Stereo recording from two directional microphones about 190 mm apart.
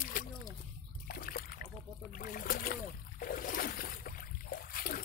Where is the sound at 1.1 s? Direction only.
50° left (ahead or behind).